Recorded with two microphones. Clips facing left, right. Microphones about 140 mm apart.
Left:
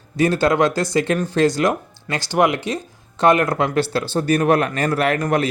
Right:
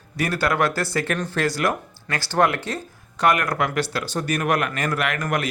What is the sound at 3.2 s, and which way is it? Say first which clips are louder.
Speech: left 5 dB; 25° left (ahead or behind).